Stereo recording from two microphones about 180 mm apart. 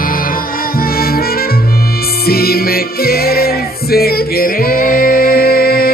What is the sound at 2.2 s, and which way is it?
Music, 60° left (ahead or behind).